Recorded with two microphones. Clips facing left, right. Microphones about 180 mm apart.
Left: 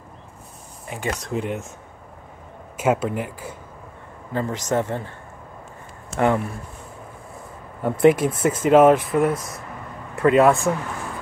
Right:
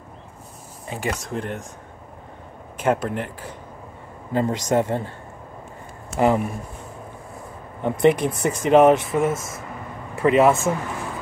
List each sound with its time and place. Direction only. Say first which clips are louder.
1.0 s speech: left 2 dB; 5° right (ahead or behind)
2.8 s speech: left 1 dB; 5° left (ahead or behind)
4.3 s speech: right 3 dB; 20° right (ahead or behind)
6.0 s speech: right 1 dB; 5° right (ahead or behind)
7.8 s speech: left 2 dB; 5° left (ahead or behind)